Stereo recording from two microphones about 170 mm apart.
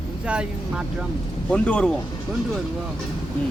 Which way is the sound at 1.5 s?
5° left (ahead or behind).